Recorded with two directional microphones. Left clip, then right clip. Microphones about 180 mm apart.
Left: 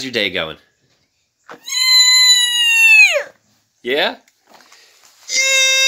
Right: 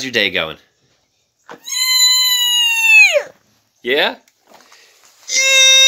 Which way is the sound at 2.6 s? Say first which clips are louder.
Left 1 dB; 45° right (ahead or behind).